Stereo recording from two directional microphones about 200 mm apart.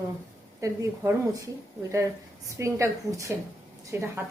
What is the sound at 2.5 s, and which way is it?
A woman's voice, 15° right (ahead or behind).